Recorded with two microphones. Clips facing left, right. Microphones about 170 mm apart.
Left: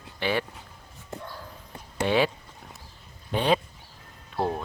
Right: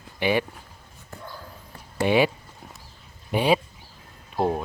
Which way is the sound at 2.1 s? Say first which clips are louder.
Right 3 dB; 10° right (ahead or behind).